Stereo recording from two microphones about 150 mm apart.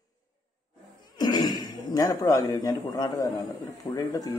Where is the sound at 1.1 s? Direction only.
30° left (ahead or behind).